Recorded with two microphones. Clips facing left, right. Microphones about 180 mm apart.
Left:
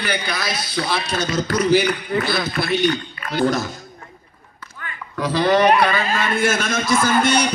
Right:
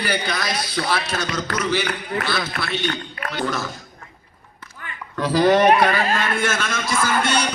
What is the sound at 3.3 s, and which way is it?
Speech, 40° left (ahead or behind).